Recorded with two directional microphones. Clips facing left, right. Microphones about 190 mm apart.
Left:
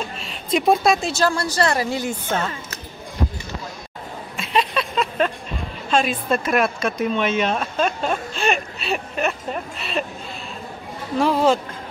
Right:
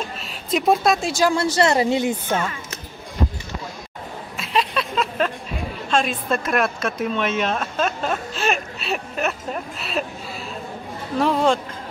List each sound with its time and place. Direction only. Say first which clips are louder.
0.2 s speech: left 2 dB; centre (ahead or behind)
1.1 s speech: right 2 dB; 20° right (ahead or behind)
4.4 s a sound: left 1 dB; centre (ahead or behind)
5.9 s speech: left 2 dB; centre (ahead or behind)
11.1 s speech: left 1 dB; centre (ahead or behind)